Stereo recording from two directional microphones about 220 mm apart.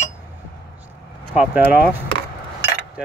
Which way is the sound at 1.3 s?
5° right (ahead or behind).